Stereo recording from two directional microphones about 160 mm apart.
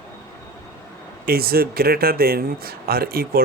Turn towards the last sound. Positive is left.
turn(degrees=-70)  # may be behind; listen again after turning